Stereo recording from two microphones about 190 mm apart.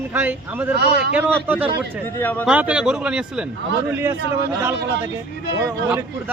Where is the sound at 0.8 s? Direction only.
60° right (ahead or behind).